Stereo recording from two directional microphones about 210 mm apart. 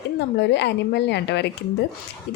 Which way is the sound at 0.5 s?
55° left (ahead or behind).